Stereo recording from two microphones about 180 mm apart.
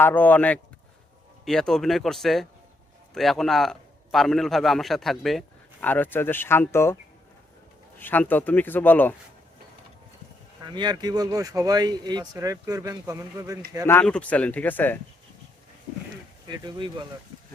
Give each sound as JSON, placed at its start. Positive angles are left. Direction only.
{"t": 0.0, "sound": "a man's voice", "side_deg": 10}
{"t": 7.9, "sound": "speech", "side_deg": 10}
{"t": 10.6, "sound": "speech", "side_deg": -25}
{"t": 13.8, "sound": "speech", "side_deg": 10}
{"t": 16.5, "sound": "speech", "side_deg": -25}